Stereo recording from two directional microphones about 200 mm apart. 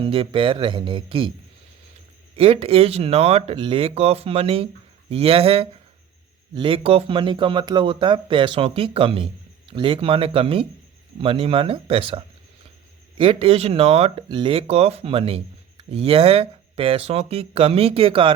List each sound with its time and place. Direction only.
0.0 s speech: 25° right (ahead or behind)
2.3 s speech: 25° right (ahead or behind)